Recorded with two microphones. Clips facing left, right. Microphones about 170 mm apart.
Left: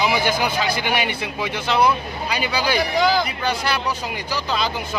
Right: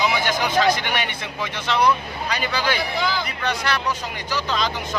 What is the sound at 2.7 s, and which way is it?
Speech, 40° left (ahead or behind).